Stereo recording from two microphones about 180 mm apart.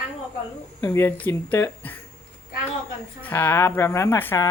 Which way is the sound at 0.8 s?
15° left (ahead or behind).